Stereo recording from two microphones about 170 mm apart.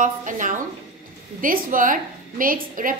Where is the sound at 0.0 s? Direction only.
50° right (ahead or behind).